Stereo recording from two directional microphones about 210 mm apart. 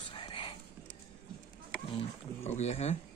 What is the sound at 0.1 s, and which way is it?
Whispering, 25° left (ahead or behind).